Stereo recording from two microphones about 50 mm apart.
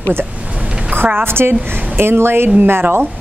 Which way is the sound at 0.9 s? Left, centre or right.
Right.